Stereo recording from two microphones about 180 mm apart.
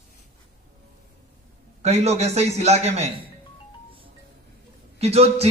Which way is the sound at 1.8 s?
35° right (ahead or behind).